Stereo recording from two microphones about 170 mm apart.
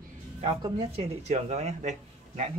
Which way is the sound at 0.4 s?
30° right (ahead or behind).